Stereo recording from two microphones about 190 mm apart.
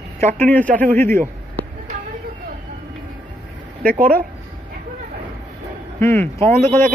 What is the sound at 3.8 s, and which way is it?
Speech, 50° right (ahead or behind).